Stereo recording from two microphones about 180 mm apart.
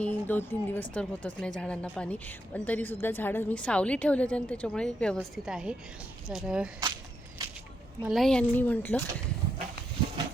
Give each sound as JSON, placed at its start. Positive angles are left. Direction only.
{"t": 0.0, "sound": "a woman's voice", "side_deg": 10}
{"t": 6.7, "sound": "a sound", "side_deg": -20}
{"t": 8.0, "sound": "a woman's voice", "side_deg": 0}